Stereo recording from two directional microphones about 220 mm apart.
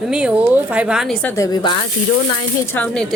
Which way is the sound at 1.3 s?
15° left (ahead or behind).